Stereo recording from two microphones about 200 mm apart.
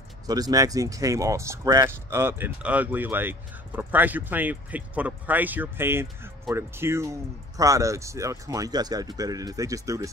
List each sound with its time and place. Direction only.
0.3 s speech: 20° right (ahead or behind)